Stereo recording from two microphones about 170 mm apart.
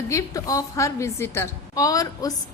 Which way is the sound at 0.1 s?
20° left (ahead or behind).